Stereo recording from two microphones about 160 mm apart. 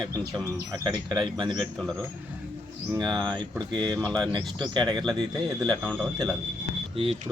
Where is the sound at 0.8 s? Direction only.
25° right (ahead or behind).